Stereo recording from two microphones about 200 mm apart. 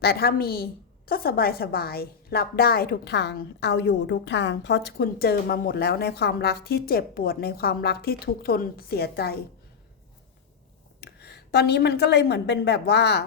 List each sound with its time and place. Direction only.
0.0 s a woman's voice: 50° left (ahead or behind)
11.0 s a woman's voice: 55° left (ahead or behind)